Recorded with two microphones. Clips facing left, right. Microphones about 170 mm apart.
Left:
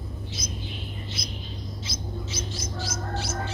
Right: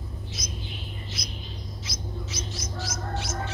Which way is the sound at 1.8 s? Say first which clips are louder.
Left 1 dB; 30° left (ahead or behind).